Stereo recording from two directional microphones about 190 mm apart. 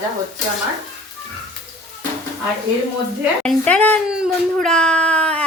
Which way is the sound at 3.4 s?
5° left (ahead or behind).